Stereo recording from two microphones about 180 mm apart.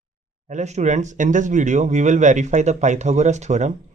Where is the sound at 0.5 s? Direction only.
40° right (ahead or behind).